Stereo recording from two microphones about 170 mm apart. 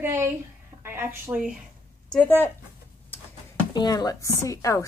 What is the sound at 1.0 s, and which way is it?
Speech, 10° right (ahead or behind).